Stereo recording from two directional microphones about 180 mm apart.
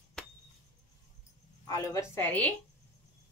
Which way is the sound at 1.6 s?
20° left (ahead or behind).